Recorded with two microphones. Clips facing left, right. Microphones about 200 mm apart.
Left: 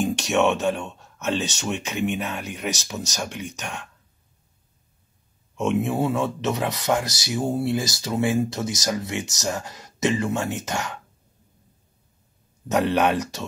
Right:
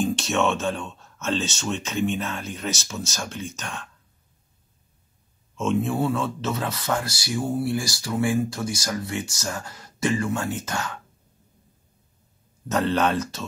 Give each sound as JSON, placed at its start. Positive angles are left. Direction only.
{"t": 0.0, "sound": "speech", "side_deg": 10}
{"t": 5.6, "sound": "speech", "side_deg": 15}
{"t": 12.6, "sound": "speech", "side_deg": 15}